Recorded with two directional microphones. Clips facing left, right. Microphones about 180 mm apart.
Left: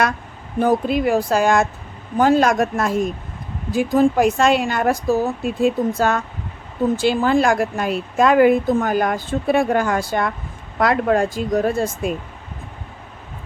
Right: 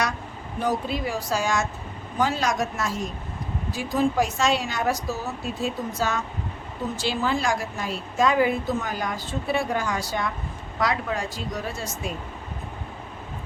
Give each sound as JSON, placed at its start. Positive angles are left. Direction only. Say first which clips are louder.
{"t": 0.6, "sound": "a woman's voice", "louder": "left 9 dB", "side_deg": 55}